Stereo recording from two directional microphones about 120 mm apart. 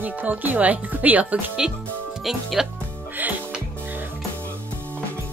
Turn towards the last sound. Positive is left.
turn(degrees=-15)  # may be behind; listen again after turning